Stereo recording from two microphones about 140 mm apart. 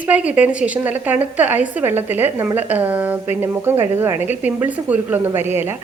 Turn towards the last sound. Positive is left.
turn(degrees=-15)  # may be behind; listen again after turning